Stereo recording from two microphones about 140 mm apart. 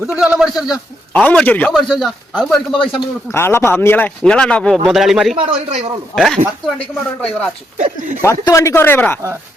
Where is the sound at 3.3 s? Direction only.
15° left (ahead or behind); by 5.3 s centre (ahead or behind).